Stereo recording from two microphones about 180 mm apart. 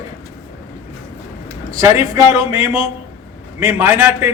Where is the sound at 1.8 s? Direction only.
20° right (ahead or behind).